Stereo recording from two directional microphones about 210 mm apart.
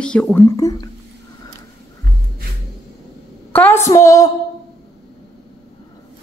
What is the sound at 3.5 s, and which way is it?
Speech, 10° left (ahead or behind).